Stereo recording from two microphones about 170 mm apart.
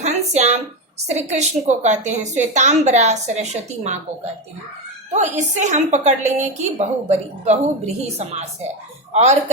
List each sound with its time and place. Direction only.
0.0 s a sound: 40° right (ahead or behind)
1.1 s a woman's voice: 40° right (ahead or behind)
5.1 s a woman's voice: 45° right (ahead or behind)